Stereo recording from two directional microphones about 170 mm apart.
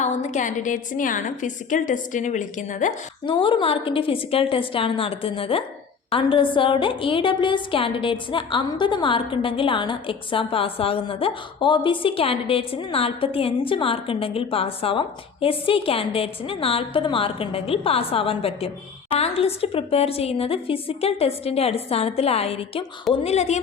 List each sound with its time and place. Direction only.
0.0 s a woman's voice: 45° left (ahead or behind)
3.2 s a woman's voice: 30° left (ahead or behind)